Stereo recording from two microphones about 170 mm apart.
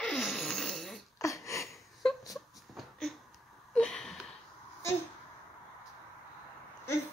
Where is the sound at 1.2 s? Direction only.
20° left (ahead or behind).